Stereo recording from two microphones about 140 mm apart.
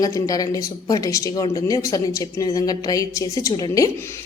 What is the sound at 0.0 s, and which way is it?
A woman's voice, 25° left (ahead or behind).